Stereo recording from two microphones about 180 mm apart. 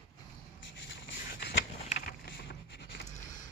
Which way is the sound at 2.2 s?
70° left (ahead or behind).